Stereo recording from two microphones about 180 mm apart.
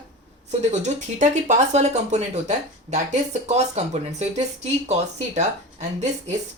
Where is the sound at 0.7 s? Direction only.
40° right (ahead or behind).